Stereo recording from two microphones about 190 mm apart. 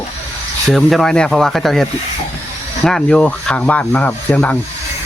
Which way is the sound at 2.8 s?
5° left (ahead or behind).